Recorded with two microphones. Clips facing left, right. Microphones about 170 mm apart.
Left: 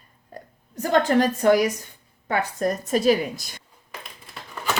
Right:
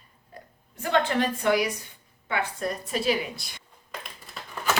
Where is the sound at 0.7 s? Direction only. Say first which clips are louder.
Left 5 dB; 40° left (ahead or behind).